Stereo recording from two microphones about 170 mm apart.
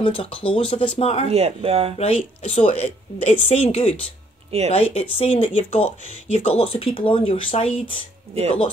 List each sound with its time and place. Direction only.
0.0 s speech: 30° left (ahead or behind)
1.2 s speech: 35° right (ahead or behind)
2.0 s speech: 35° left (ahead or behind)